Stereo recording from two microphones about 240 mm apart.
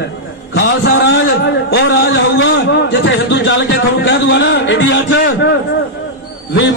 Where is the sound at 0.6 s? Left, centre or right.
Left.